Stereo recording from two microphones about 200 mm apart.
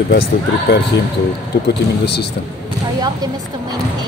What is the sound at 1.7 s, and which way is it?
Speech, 55° left (ahead or behind).